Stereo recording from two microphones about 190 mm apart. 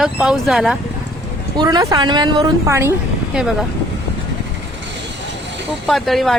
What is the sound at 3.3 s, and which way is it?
Speech, centre (ahead or behind).